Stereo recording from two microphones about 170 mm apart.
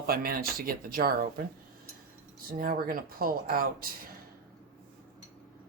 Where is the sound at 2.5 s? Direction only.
55° right (ahead or behind).